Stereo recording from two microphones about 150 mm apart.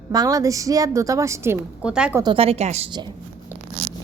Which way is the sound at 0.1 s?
25° right (ahead or behind).